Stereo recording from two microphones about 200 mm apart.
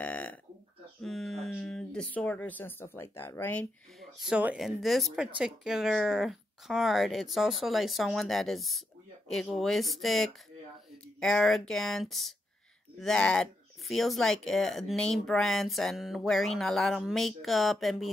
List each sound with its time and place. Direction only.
0.0 s burping: 5° left (ahead or behind)
1.0 s speech: centre (ahead or behind)